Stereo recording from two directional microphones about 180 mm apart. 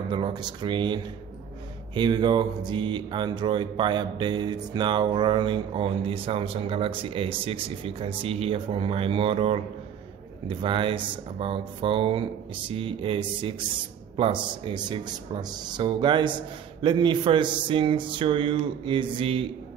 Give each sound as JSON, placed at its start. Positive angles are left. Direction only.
{"t": 0.1, "sound": "speech", "side_deg": -25}